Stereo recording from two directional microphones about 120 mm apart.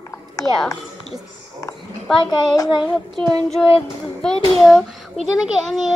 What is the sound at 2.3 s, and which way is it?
Child singing, 35° left (ahead or behind).